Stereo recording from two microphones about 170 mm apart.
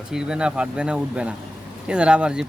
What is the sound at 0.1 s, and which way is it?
Speech, 5° right (ahead or behind).